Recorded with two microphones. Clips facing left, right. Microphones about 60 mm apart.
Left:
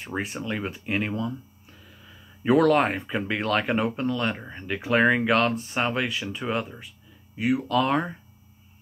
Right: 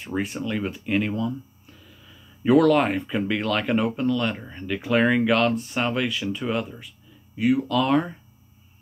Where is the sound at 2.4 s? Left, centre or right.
Left.